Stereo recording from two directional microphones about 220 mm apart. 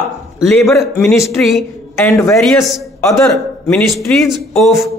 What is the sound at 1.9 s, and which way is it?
Speech, 15° left (ahead or behind).